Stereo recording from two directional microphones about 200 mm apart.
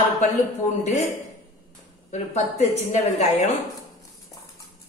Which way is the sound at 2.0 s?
35° left (ahead or behind).